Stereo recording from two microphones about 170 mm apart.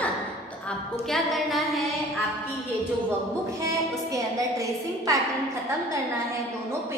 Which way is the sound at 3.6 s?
20° right (ahead or behind).